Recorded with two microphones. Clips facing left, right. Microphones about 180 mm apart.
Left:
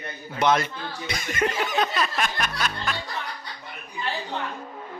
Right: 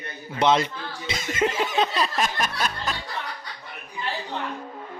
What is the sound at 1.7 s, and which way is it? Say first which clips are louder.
Music: right 1 dB; 30° right (ahead or behind).